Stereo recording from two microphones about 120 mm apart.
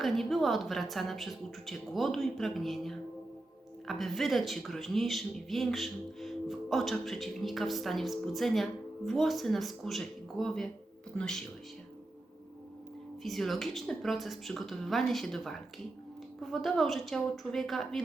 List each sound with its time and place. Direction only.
0.0 s speech: centre (ahead or behind)
13.2 s speech: centre (ahead or behind)